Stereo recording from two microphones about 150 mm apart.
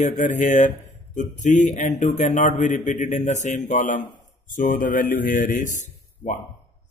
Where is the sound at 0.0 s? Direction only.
55° left (ahead or behind).